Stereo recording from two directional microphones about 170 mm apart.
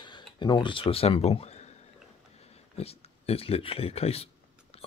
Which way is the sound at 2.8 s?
35° left (ahead or behind).